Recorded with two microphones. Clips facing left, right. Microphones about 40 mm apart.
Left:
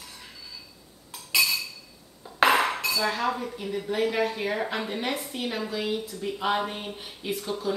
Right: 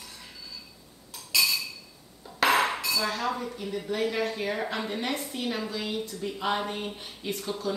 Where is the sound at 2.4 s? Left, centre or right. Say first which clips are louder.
Left 3 dB; left.